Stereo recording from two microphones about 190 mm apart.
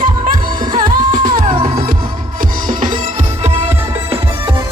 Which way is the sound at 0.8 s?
45° right (ahead or behind).